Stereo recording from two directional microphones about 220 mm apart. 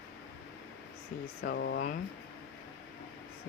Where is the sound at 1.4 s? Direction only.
50° left (ahead or behind).